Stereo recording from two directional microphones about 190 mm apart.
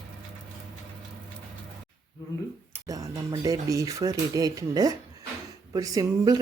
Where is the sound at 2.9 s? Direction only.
20° right (ahead or behind).